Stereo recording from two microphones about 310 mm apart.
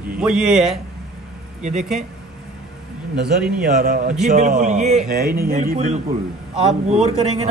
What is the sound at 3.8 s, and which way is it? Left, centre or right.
A man's voice, right.